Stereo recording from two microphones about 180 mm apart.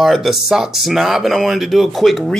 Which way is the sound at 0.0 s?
Centre (ahead or behind).